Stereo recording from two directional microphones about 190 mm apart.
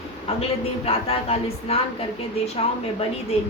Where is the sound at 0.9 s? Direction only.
30° left (ahead or behind).